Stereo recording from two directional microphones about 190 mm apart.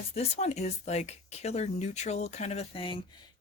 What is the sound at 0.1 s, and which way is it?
Speech, 35° left (ahead or behind).